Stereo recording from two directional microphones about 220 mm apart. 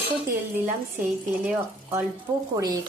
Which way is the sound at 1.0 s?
10° right (ahead or behind).